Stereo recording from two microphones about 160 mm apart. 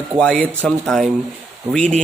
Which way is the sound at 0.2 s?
5° left (ahead or behind).